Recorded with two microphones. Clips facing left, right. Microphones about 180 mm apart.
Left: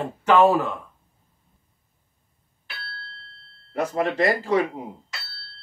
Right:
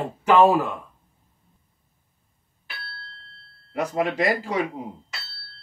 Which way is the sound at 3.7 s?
10° right (ahead or behind).